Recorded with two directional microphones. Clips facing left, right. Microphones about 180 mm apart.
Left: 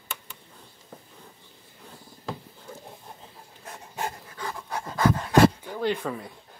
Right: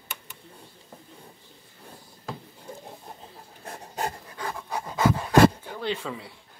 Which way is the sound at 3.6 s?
35° right (ahead or behind).